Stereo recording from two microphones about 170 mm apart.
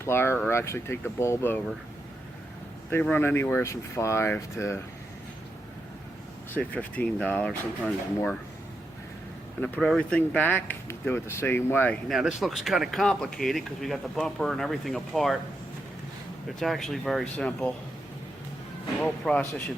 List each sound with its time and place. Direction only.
0.0 s speech: 15° left (ahead or behind)
2.9 s speech: 10° left (ahead or behind)
6.6 s speech: 10° left (ahead or behind)
9.6 s speech: 5° left (ahead or behind)
12.0 s speech: centre (ahead or behind)
16.6 s speech: centre (ahead or behind)
19.0 s speech: 5° left (ahead or behind)